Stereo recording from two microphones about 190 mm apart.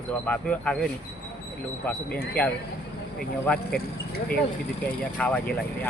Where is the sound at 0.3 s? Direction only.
5° left (ahead or behind).